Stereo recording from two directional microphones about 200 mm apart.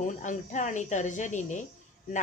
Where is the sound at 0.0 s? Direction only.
40° left (ahead or behind).